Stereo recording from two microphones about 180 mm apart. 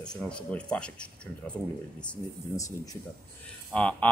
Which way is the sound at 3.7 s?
5° left (ahead or behind).